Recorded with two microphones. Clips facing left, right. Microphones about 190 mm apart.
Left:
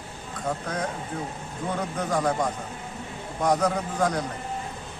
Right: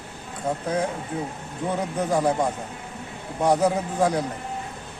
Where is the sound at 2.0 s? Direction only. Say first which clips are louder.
Right 3 dB; 30° right (ahead or behind).